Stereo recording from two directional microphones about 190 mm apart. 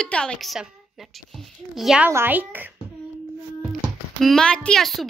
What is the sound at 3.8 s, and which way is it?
A child's voice, centre (ahead or behind).